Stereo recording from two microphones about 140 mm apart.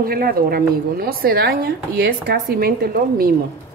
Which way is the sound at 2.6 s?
90° right.